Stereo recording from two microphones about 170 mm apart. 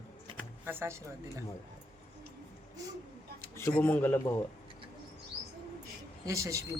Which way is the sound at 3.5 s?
15° left (ahead or behind).